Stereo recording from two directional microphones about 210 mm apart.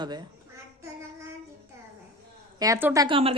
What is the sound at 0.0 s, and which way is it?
Speech, 20° right (ahead or behind).